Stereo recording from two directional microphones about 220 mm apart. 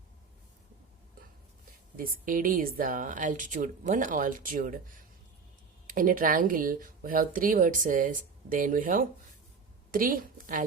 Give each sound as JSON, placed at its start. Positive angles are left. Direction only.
{"t": 2.0, "sound": "speech", "side_deg": -40}
{"t": 5.9, "sound": "speech", "side_deg": -40}